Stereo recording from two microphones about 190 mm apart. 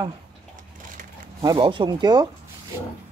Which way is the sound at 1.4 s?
25° right (ahead or behind).